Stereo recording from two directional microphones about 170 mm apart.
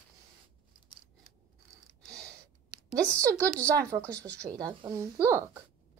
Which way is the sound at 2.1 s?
20° right (ahead or behind).